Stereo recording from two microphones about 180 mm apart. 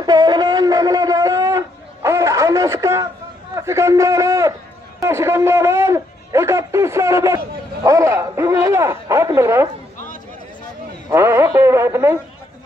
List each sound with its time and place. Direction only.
0.0 s shofar: 20° right (ahead or behind)
3.5 s a man's voice: 15° right (ahead or behind)
11.1 s a man's voice: 15° right (ahead or behind)